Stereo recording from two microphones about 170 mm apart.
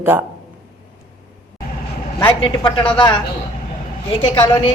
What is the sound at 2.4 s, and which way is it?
Speech, 30° left (ahead or behind).